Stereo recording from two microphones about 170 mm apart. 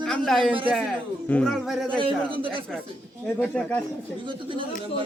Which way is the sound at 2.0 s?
30° right (ahead or behind).